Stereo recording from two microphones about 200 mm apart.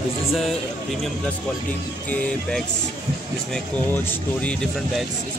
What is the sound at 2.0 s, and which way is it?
Speech, 5° left (ahead or behind).